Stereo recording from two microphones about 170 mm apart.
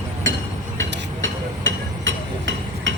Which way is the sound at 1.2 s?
90° right.